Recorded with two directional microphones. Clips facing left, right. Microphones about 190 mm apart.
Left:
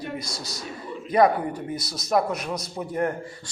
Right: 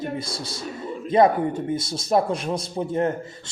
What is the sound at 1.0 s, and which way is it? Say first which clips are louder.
A man's voice: right 2 dB; 25° right (ahead or behind).